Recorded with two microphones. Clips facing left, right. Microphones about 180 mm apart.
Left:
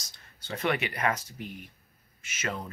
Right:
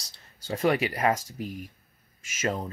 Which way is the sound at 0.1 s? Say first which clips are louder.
Right 5 dB; 35° right (ahead or behind).